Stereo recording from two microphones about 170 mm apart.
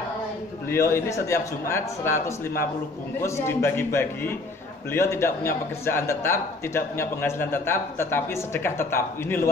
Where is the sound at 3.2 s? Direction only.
15° left (ahead or behind).